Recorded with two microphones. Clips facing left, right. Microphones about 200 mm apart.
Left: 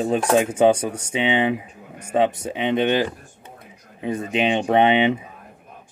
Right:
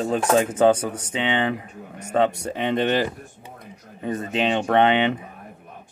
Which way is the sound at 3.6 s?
10° left (ahead or behind).